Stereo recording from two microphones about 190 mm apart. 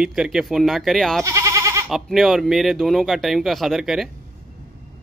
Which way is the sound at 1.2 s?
15° right (ahead or behind).